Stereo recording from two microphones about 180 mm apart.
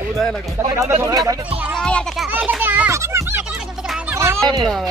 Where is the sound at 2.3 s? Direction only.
5° right (ahead or behind).